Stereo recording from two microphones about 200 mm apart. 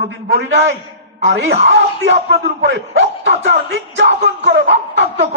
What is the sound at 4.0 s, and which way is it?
Speech, 60° right (ahead or behind).